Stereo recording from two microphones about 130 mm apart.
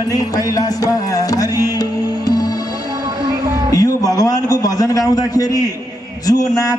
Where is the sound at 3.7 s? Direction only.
30° left (ahead or behind).